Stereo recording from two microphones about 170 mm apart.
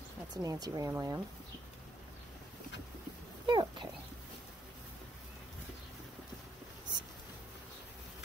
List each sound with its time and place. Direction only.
0.3 s speech: 20° right (ahead or behind)
3.4 s speech: 25° right (ahead or behind)